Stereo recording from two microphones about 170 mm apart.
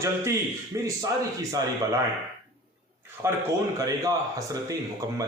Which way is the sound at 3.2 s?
15° right (ahead or behind).